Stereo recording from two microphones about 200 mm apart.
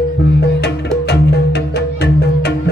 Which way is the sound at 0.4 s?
55° left (ahead or behind).